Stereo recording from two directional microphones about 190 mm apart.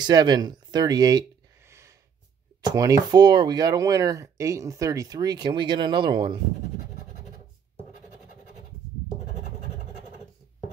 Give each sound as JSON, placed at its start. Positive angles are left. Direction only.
{"t": 0.0, "sound": "speech", "side_deg": -20}
{"t": 1.7, "sound": "a sound", "side_deg": -15}
{"t": 2.6, "sound": "speech", "side_deg": -20}